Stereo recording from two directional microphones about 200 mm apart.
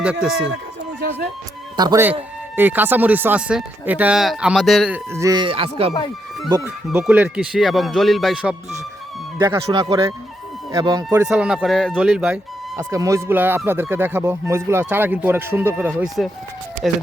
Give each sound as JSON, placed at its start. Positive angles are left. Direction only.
{"t": 0.0, "sound": "speech", "side_deg": -5}
{"t": 1.7, "sound": "speech", "side_deg": -20}
{"t": 5.1, "sound": "speech", "side_deg": -15}
{"t": 6.5, "sound": "speech", "side_deg": -10}
{"t": 9.4, "sound": "speech", "side_deg": -20}
{"t": 11.3, "sound": "speech", "side_deg": -5}
{"t": 12.9, "sound": "speech", "side_deg": -15}